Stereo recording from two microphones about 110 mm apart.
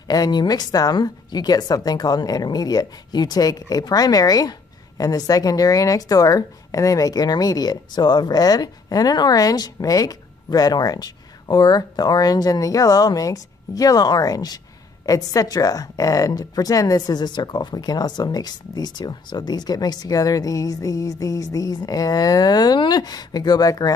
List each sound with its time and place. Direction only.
0.1 s a woman's voice: 40° left (ahead or behind)